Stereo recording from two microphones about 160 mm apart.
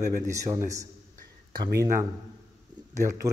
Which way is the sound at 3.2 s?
20° right (ahead or behind).